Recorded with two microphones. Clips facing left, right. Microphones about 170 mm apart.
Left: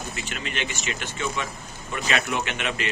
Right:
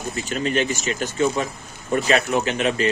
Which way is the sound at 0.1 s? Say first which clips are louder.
Right 10 dB; 40° right (ahead or behind).